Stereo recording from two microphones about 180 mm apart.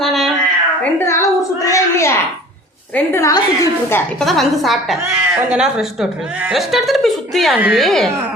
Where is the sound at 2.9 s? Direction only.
15° left (ahead or behind).